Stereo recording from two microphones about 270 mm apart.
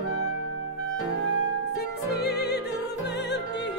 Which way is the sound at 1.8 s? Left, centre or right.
Left.